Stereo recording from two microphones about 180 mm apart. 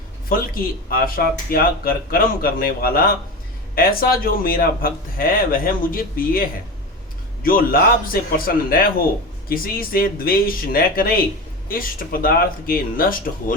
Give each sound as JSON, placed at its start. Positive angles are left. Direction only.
{"t": 0.3, "sound": "a man's voice", "side_deg": 55}